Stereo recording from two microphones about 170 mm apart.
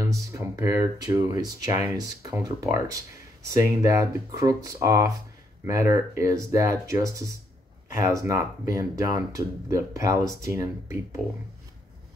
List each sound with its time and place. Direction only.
0.1 s speech: 15° right (ahead or behind)